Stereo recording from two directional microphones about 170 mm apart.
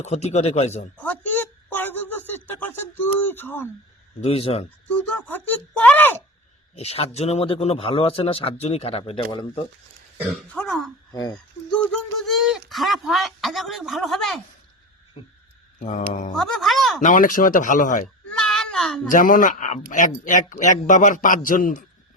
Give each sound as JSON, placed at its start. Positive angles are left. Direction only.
{"t": 0.0, "sound": "a man's voice", "side_deg": 40}
{"t": 0.9, "sound": "a sound", "side_deg": 10}
{"t": 4.2, "sound": "a man's voice", "side_deg": 35}
{"t": 4.9, "sound": "speech", "side_deg": 10}
{"t": 6.7, "sound": "a man's voice", "side_deg": 40}
{"t": 10.2, "sound": "speech", "side_deg": 5}
{"t": 11.1, "sound": "speech", "side_deg": 20}
{"t": 11.7, "sound": "speech", "side_deg": 5}
{"t": 15.8, "sound": "a man's voice", "side_deg": 45}
{"t": 16.3, "sound": "speech", "side_deg": 0}
{"t": 17.0, "sound": "a man's voice", "side_deg": 50}
{"t": 18.3, "sound": "a sound", "side_deg": 5}
{"t": 19.0, "sound": "a man's voice", "side_deg": 55}